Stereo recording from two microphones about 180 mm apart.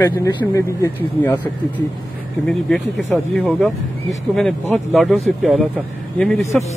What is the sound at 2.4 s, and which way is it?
Speech, centre (ahead or behind).